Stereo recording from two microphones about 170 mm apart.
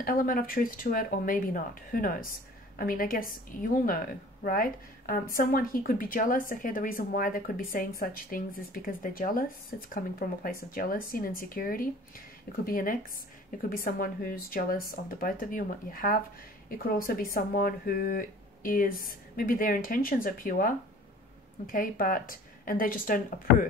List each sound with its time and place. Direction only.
0.0 s a woman's voice: 55° left (ahead or behind)